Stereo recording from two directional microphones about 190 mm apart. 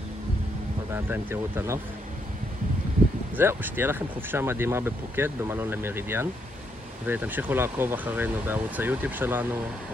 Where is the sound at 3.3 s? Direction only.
10° right (ahead or behind).